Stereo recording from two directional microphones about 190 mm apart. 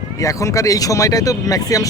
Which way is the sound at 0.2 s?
15° left (ahead or behind).